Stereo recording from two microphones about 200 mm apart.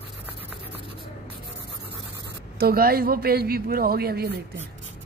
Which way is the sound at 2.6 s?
50° right (ahead or behind).